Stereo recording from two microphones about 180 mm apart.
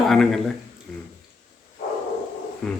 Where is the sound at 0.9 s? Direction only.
Centre (ahead or behind).